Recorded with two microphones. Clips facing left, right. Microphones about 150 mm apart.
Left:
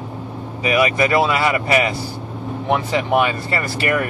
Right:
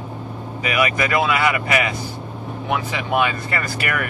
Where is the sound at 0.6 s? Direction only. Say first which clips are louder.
Left 4 dB; 30° left (ahead or behind).